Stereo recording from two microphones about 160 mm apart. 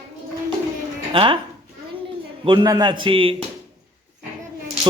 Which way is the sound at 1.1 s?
35° right (ahead or behind).